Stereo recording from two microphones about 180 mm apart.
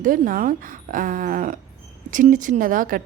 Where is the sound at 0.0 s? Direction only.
50° right (ahead or behind).